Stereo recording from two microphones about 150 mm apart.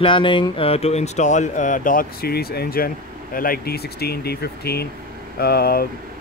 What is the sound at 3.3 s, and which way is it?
Speech, 75° left (ahead or behind).